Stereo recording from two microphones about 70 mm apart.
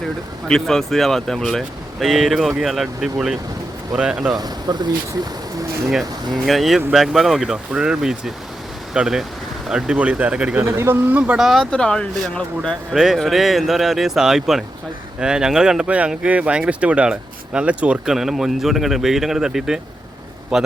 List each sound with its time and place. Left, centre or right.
0.4 s speech: centre
4.3 s speech: right
6.3 s speech: centre
10.8 s speech: right
11.3 s speech: centre
11.6 s speech: centre
12.9 s speech: centre
18.0 s speech: centre